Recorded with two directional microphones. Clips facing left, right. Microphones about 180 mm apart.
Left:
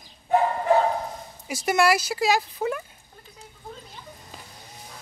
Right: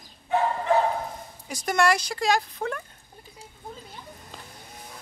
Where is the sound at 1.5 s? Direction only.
5° left (ahead or behind).